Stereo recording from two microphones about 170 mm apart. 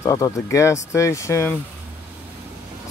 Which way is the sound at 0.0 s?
20° left (ahead or behind).